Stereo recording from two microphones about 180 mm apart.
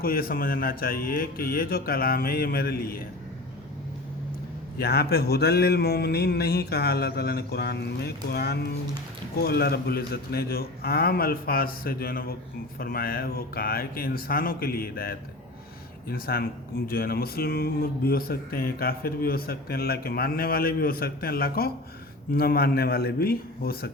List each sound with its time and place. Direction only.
0.0 s speech: 55° left (ahead or behind)
4.8 s speech: 60° left (ahead or behind)